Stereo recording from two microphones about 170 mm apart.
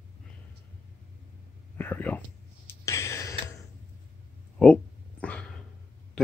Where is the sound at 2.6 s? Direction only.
15° left (ahead or behind).